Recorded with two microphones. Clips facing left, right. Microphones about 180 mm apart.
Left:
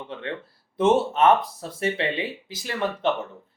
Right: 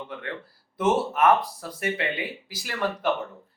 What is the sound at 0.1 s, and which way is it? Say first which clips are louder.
Speech: left 3 dB; 25° left (ahead or behind).